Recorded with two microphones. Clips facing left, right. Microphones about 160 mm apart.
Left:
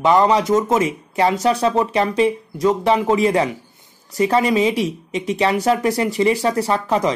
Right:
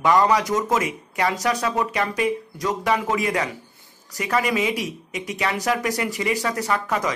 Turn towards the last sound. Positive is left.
turn(degrees=30)  # may be behind; listen again after turning